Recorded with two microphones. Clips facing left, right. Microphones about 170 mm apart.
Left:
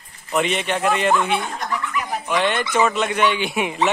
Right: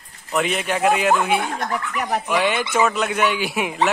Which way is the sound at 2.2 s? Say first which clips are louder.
Left 2 dB; 10° right (ahead or behind).